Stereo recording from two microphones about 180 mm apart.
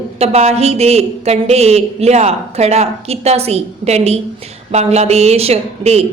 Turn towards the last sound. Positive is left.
turn(degrees=-35)  # may be behind; listen again after turning